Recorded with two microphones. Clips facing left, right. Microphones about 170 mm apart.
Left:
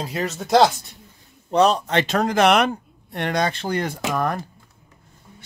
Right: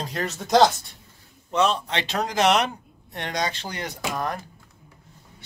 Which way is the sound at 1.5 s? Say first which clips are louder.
Left 5 dB; 40° left (ahead or behind).